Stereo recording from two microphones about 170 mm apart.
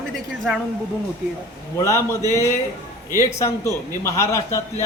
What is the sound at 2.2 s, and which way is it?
Speech, 20° right (ahead or behind).